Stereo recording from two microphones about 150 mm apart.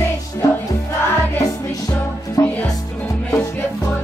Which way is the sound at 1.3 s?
25° left (ahead or behind).